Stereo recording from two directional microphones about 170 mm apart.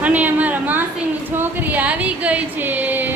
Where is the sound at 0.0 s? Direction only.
10° right (ahead or behind).